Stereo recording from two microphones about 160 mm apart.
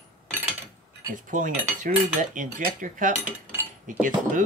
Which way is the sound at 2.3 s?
55° right (ahead or behind).